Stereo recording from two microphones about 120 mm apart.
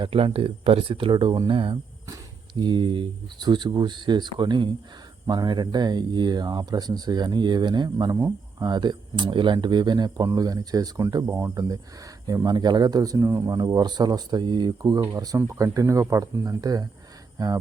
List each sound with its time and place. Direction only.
0.0 s speech: 45° right (ahead or behind); by 13.5 s 25° right (ahead or behind)
13.5 s speech: 35° right (ahead or behind)